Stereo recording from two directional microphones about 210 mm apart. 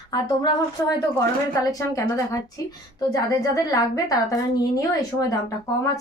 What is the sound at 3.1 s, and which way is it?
A woman's voice, 15° left (ahead or behind).